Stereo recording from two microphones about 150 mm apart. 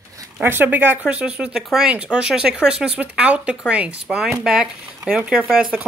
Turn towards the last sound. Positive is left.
turn(degrees=-5)  # may be behind; listen again after turning